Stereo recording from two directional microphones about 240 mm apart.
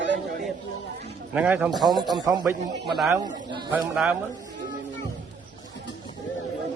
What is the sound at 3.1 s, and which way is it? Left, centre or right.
Speech, centre.